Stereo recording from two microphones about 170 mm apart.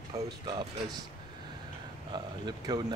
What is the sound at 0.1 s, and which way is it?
Speech, 20° right (ahead or behind).